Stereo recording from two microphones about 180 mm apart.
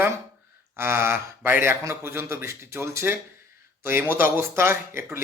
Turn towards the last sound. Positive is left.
turn(degrees=-15)  # may be behind; listen again after turning